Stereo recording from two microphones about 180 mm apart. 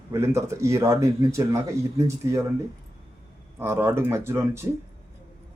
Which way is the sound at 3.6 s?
15° right (ahead or behind).